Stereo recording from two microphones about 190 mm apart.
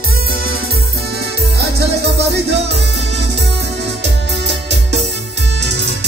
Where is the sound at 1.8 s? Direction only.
60° right (ahead or behind).